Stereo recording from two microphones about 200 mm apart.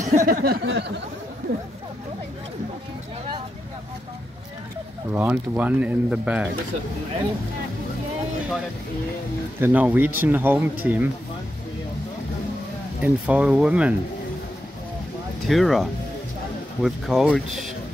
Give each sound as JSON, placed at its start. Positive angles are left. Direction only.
{"t": 0.0, "sound": "a sound", "side_deg": -35}
{"t": 5.1, "sound": "speech", "side_deg": -10}
{"t": 9.6, "sound": "speech", "side_deg": -5}
{"t": 13.0, "sound": "speech", "side_deg": -5}
{"t": 15.4, "sound": "speech", "side_deg": 0}